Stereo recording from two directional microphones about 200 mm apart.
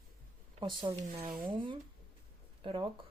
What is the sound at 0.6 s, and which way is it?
Speech, 25° right (ahead or behind).